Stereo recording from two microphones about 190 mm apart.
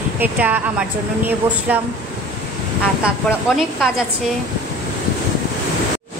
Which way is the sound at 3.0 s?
Centre (ahead or behind).